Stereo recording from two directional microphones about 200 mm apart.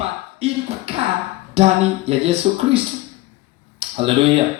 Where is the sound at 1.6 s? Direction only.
30° right (ahead or behind).